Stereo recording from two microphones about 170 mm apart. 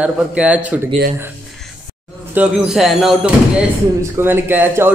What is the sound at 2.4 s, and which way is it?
Speech, 5° right (ahead or behind).